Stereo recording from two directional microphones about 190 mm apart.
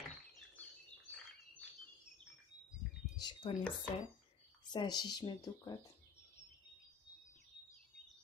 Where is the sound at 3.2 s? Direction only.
25° left (ahead or behind).